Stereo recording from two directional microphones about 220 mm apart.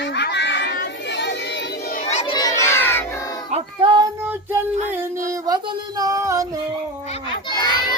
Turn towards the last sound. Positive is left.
turn(degrees=20)  # may be behind; listen again after turning